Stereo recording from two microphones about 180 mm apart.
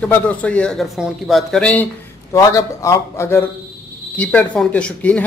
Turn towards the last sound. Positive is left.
turn(degrees=10)  # may be behind; listen again after turning